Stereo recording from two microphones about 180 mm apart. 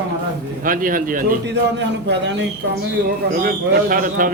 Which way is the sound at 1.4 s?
75° right (ahead or behind).